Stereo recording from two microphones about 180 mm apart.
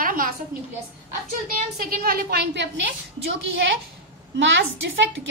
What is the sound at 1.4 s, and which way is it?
A woman's voice, 55° right (ahead or behind).